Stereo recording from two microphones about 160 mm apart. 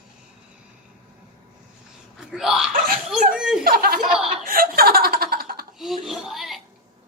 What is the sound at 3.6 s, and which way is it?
Speech, 70° right (ahead or behind).